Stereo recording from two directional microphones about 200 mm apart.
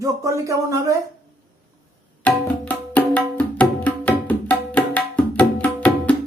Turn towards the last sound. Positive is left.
turn(degrees=5)  # may be behind; listen again after turning